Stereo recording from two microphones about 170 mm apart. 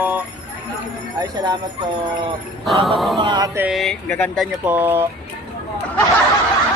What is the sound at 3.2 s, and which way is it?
Speech, 25° right (ahead or behind).